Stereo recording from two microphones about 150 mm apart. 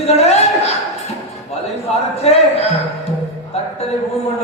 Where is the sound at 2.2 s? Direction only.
45° left (ahead or behind).